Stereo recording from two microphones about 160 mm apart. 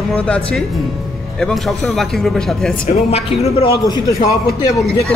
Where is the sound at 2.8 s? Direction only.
40° left (ahead or behind).